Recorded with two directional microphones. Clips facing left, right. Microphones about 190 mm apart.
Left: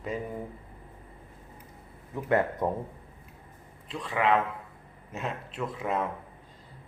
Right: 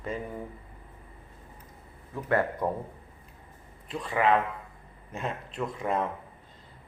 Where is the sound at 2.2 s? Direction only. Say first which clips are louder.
Left 1 dB; 20° left (ahead or behind).